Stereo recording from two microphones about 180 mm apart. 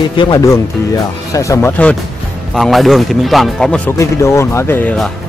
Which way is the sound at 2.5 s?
Centre (ahead or behind).